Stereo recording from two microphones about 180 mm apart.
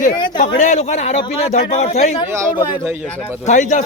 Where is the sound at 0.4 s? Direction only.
40° left (ahead or behind).